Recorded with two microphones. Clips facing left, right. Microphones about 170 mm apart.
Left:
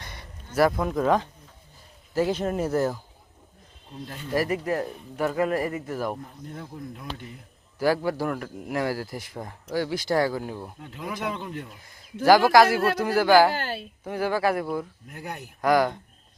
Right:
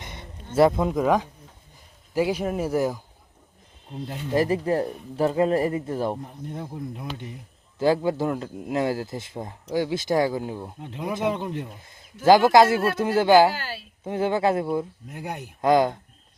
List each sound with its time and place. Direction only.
0.0 s speech: 20° right (ahead or behind)
4.1 s a man's voice: 25° right (ahead or behind)
13.5 s a woman's voice: 50° left (ahead or behind)
14.0 s a man's voice: 20° right (ahead or behind)